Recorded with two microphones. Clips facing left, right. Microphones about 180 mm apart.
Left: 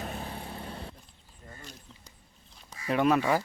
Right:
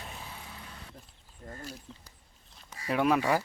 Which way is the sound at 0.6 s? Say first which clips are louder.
Left 8 dB; 30° left (ahead or behind).